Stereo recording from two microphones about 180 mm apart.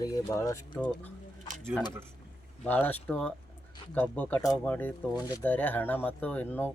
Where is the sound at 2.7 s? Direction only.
10° left (ahead or behind).